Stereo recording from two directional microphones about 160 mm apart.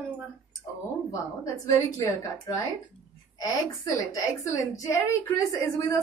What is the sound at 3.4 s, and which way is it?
A woman's voice, 20° left (ahead or behind).